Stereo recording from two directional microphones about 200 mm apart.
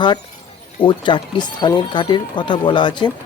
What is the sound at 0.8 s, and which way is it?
Speech, 25° left (ahead or behind).